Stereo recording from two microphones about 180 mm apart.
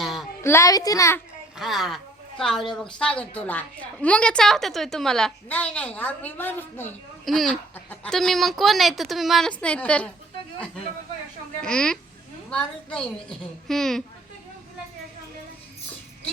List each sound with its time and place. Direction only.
0.0 s a sound: centre (ahead or behind)
0.4 s a woman's voice: 15° left (ahead or behind)
1.5 s a woman's voice: centre (ahead or behind)
7.3 s speech: centre (ahead or behind)
11.6 s speech: 5° left (ahead or behind)